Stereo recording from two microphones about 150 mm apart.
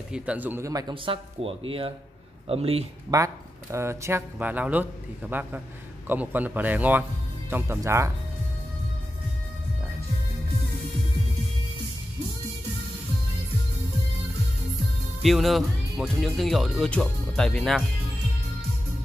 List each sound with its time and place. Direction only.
0.1 s speech: 10° right (ahead or behind); by 2.8 s 40° right (ahead or behind)
3.1 s speech: 25° right (ahead or behind)
15.2 s speech: centre (ahead or behind)